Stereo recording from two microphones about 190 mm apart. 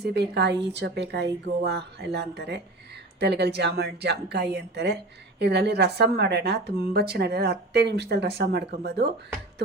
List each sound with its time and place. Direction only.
0.0 s a woman's voice: 60° right (ahead or behind)